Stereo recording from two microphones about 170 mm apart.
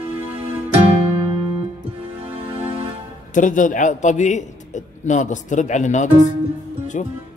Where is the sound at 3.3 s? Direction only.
50° left (ahead or behind).